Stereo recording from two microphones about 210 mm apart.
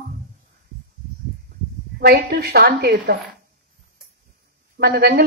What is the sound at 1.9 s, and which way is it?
A woman's voice, 50° right (ahead or behind).